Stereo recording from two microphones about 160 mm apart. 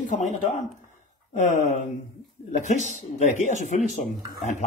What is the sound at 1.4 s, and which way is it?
A man's voice, 50° left (ahead or behind).